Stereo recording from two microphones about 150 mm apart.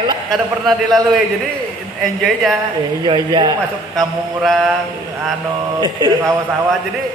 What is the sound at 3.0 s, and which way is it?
Speech, 30° right (ahead or behind).